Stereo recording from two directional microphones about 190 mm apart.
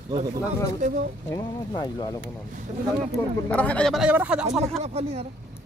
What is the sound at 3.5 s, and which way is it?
Speech, 5° left (ahead or behind).